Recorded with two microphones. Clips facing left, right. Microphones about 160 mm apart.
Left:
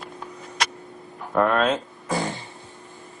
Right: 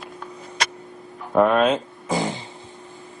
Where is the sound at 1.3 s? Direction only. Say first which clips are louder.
Right 3 dB; 15° right (ahead or behind).